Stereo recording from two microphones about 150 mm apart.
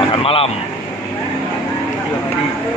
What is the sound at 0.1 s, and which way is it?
Speech, 40° left (ahead or behind).